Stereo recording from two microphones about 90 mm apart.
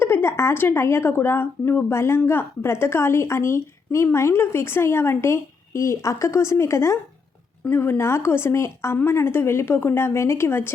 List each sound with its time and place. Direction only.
0.0 s speech: 25° left (ahead or behind)